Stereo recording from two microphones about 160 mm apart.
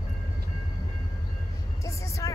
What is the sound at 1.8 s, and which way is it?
Vehicle, 20° left (ahead or behind).